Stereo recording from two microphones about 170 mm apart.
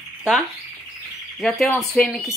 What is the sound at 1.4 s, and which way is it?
Speech, 5° left (ahead or behind).